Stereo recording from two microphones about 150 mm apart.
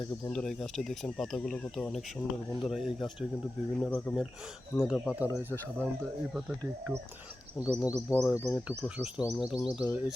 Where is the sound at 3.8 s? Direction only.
10° left (ahead or behind).